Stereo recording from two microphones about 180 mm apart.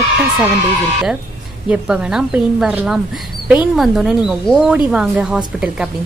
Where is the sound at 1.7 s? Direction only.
5° right (ahead or behind).